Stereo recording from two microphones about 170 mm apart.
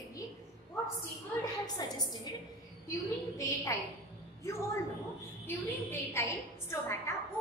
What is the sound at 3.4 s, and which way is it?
Speech, 20° left (ahead or behind).